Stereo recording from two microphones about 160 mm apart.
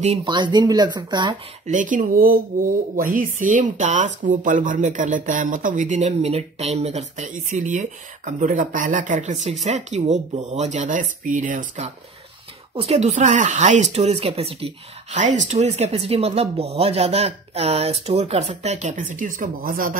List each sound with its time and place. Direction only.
0.0 s speech: 40° right (ahead or behind)
0.3 s speech: 25° right (ahead or behind)
1.7 s speech: 55° right (ahead or behind)